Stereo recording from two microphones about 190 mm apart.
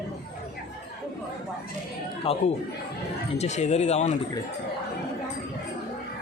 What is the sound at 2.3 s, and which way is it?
Speech, 30° left (ahead or behind).